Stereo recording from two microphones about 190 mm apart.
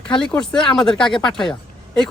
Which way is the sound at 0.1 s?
5° left (ahead or behind).